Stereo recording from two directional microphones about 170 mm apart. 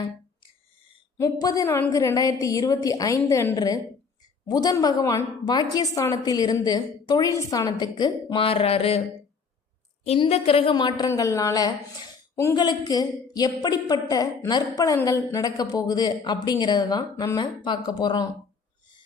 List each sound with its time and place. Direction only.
1.2 s a woman's voice: 20° left (ahead or behind)
10.0 s a woman's voice: 35° left (ahead or behind)